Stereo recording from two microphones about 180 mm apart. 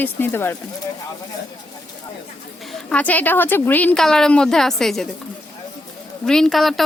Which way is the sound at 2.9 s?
10° left (ahead or behind).